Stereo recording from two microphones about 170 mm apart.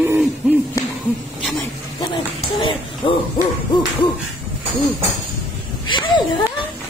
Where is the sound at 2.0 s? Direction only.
30° left (ahead or behind).